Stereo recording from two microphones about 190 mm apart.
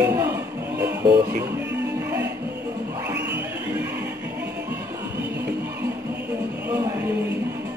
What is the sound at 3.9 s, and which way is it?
Music, 60° right (ahead or behind).